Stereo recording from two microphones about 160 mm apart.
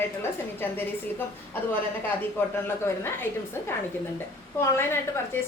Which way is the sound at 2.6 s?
15° left (ahead or behind).